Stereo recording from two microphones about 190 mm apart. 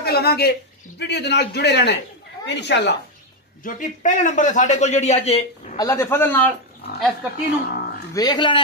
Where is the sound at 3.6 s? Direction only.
45° left (ahead or behind).